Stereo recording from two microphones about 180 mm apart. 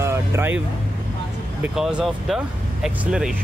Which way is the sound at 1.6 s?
5° right (ahead or behind).